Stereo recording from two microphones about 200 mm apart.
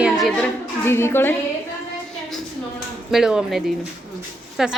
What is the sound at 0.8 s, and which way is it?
Speech, 10° left (ahead or behind).